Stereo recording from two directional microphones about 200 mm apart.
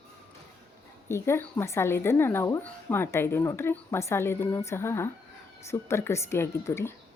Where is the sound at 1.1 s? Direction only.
15° left (ahead or behind).